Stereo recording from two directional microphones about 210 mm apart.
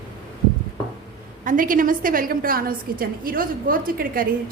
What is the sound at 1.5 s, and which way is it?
A woman's voice, 40° right (ahead or behind).